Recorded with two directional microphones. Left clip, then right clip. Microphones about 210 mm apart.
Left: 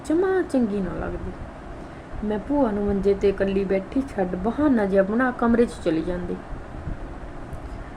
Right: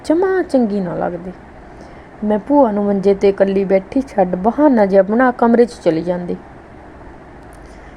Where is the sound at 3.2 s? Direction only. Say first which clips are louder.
Right 8 dB; 40° right (ahead or behind).